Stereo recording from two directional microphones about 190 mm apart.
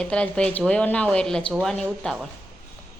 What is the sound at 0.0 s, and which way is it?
Speech, 5° left (ahead or behind).